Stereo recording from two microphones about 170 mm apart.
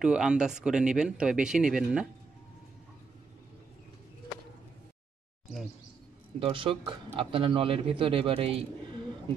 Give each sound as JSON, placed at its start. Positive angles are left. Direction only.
{"t": 0.0, "sound": "speech", "side_deg": -5}
{"t": 6.4, "sound": "a man's voice", "side_deg": -30}